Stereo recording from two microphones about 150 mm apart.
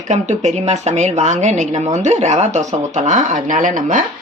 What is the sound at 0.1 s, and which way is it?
A woman's voice, 50° right (ahead or behind).